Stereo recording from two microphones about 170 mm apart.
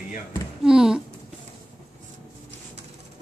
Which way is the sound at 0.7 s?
5° right (ahead or behind).